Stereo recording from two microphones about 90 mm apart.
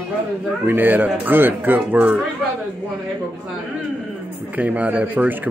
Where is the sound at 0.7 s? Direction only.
20° right (ahead or behind).